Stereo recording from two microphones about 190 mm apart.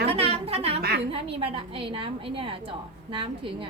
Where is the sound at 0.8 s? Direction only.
55° right (ahead or behind).